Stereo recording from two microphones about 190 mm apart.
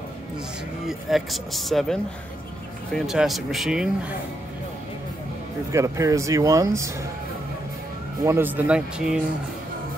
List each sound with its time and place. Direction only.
0.8 s speech: centre (ahead or behind)
5.7 s speech: 15° right (ahead or behind)
8.2 s speech: 10° right (ahead or behind)